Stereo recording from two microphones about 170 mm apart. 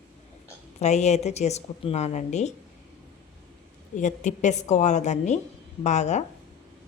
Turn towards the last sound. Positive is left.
turn(degrees=45)  # may be behind; listen again after turning